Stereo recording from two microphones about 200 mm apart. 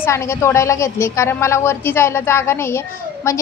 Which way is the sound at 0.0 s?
15° left (ahead or behind).